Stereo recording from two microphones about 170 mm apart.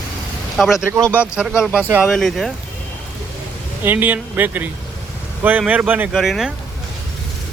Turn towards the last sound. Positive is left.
turn(degrees=0)  # may be behind; listen again after turning